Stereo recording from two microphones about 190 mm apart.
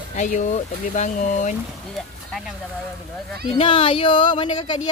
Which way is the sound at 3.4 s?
30° left (ahead or behind).